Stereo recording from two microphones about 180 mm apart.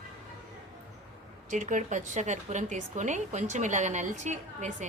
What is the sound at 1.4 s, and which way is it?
A woman's voice, 45° right (ahead or behind).